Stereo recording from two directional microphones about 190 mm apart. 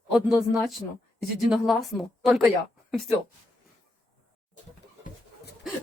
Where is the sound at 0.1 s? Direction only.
5° right (ahead or behind).